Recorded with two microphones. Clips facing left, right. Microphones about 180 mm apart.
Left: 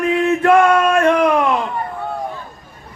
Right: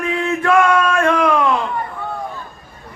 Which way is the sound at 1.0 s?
25° left (ahead or behind).